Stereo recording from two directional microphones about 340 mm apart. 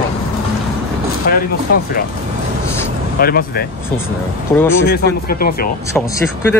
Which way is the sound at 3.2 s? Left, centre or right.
Left.